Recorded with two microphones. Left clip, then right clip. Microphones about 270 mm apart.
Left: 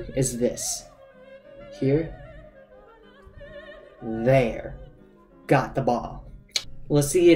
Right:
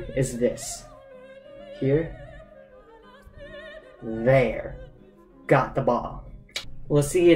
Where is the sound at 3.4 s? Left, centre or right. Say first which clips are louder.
Right 1 dB; right.